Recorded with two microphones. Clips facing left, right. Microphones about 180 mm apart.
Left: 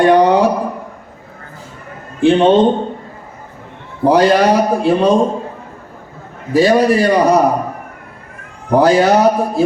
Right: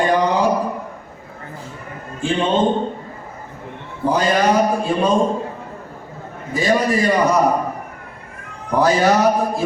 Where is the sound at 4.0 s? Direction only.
75° left (ahead or behind).